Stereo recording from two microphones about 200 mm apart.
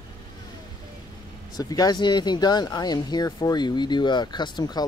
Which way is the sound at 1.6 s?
20° left (ahead or behind).